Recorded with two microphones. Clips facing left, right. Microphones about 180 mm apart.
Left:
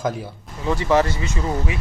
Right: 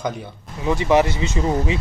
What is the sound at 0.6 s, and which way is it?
Speech, 15° right (ahead or behind).